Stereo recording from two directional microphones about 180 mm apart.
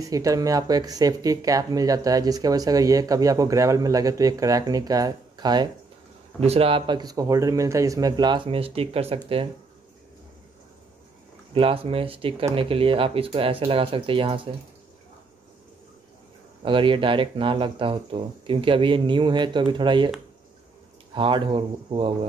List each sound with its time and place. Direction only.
0.0 s speech: 20° right (ahead or behind)
11.5 s speech: 30° right (ahead or behind)
16.6 s speech: 30° right (ahead or behind)
21.1 s speech: 25° right (ahead or behind)